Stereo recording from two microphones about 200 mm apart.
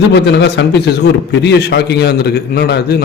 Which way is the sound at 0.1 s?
60° left (ahead or behind).